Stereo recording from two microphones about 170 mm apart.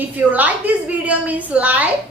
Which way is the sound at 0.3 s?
10° right (ahead or behind).